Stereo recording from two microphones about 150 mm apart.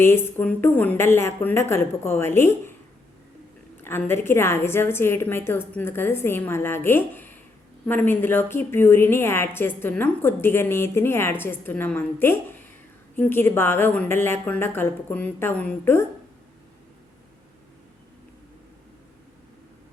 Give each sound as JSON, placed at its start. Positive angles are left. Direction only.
{"t": 0.0, "sound": "a woman's voice", "side_deg": 15}
{"t": 3.8, "sound": "a woman's voice", "side_deg": 15}